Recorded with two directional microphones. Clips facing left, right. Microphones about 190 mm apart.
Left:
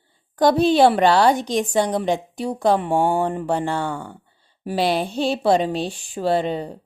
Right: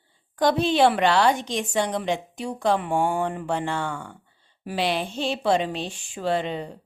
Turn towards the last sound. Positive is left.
turn(degrees=35)  # may be behind; listen again after turning